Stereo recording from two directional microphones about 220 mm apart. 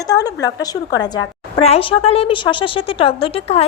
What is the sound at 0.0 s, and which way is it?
A woman's voice, 15° left (ahead or behind).